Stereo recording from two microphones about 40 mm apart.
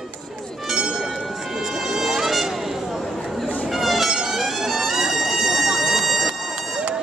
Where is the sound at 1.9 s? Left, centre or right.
Centre.